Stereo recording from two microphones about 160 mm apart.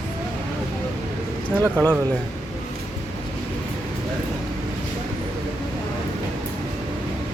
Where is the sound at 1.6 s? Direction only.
15° right (ahead or behind).